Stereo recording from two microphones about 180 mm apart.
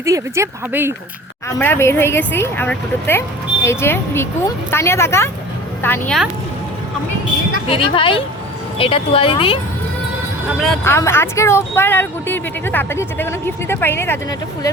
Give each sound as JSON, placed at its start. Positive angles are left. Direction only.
{"t": 0.0, "sound": "speech", "side_deg": -15}
{"t": 1.5, "sound": "speech", "side_deg": 15}
{"t": 7.7, "sound": "a woman's voice", "side_deg": 30}
{"t": 10.8, "sound": "speech", "side_deg": 15}